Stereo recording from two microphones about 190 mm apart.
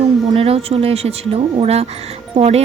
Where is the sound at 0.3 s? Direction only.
30° right (ahead or behind).